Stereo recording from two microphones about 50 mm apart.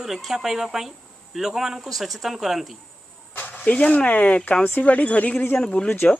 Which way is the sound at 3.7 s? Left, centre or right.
Left.